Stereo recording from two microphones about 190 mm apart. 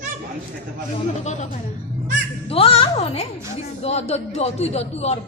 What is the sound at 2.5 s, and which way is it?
A woman's voice, 30° left (ahead or behind).